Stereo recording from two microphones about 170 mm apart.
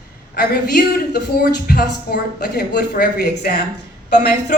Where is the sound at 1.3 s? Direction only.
60° left (ahead or behind).